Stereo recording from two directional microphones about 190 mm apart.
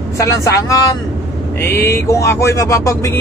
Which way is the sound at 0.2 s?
15° left (ahead or behind).